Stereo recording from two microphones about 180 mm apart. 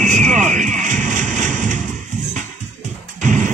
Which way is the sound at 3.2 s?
40° right (ahead or behind).